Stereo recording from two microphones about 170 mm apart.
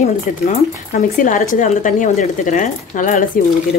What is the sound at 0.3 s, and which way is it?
Speech, 50° left (ahead or behind).